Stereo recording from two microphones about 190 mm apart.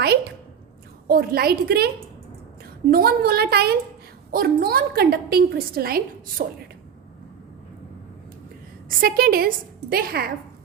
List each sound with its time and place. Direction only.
0.0 s a sound: 55° right (ahead or behind)
1.0 s a woman's voice: 50° right (ahead or behind)
2.9 s a woman's voice: 55° right (ahead or behind)
8.9 s a woman's voice: 50° right (ahead or behind)